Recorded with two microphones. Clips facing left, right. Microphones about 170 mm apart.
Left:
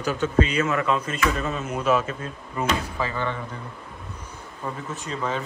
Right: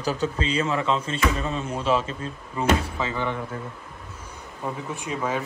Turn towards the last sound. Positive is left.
turn(degrees=-10)  # may be behind; listen again after turning